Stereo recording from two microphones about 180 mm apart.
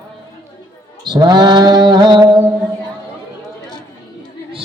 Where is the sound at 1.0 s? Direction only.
25° right (ahead or behind).